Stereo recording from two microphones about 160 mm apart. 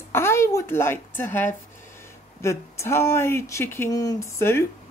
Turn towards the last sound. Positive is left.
turn(degrees=15)  # may be behind; listen again after turning